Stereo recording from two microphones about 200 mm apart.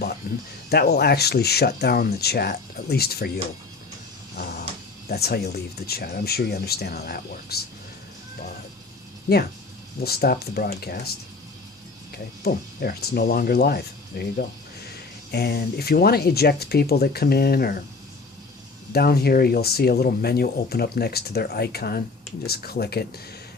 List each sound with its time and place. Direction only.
0.7 s speech: 55° left (ahead or behind)
4.4 s a sound: 50° left (ahead or behind)
5.0 s speech: 50° left (ahead or behind)
10.0 s speech: 50° left (ahead or behind)
12.1 s speech: 50° left (ahead or behind)
18.9 s speech: 50° left (ahead or behind)